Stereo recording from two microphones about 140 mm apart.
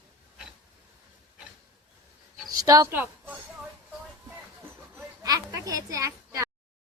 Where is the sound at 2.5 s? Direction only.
25° right (ahead or behind).